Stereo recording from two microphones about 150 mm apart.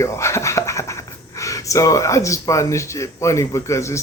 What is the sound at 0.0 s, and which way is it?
A man's voice, 20° left (ahead or behind).